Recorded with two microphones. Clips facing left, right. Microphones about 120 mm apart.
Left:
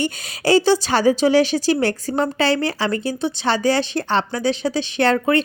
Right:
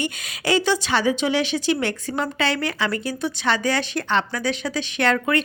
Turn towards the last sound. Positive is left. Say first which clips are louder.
# left 4 dB
turn(degrees=30)  # may be behind; listen again after turning